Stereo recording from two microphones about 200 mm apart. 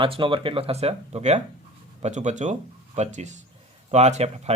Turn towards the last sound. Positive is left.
turn(degrees=-35)  # may be behind; listen again after turning